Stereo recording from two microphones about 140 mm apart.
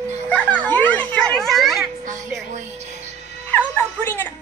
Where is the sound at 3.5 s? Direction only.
15° left (ahead or behind).